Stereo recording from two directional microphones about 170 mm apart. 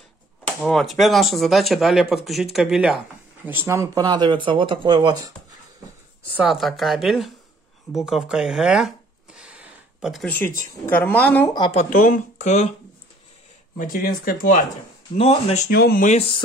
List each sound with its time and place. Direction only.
0.6 s speech: centre (ahead or behind)
3.4 s speech: 15° right (ahead or behind)
6.3 s speech: centre (ahead or behind)
7.9 s a sound: 5° right (ahead or behind)
10.6 s speech: 10° left (ahead or behind)
11.9 s speech: 50° left (ahead or behind)
13.7 s speech: 55° left (ahead or behind)
15.1 s speech: 35° left (ahead or behind)
15.7 s speech: 65° left (ahead or behind)
16.1 s speech: 35° left (ahead or behind)